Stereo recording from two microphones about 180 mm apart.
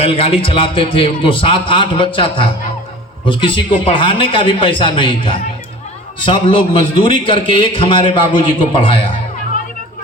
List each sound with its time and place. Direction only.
0.0 s a man's voice: 30° left (ahead or behind)